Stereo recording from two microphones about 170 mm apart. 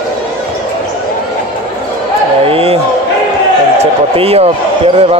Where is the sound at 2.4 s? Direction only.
35° right (ahead or behind).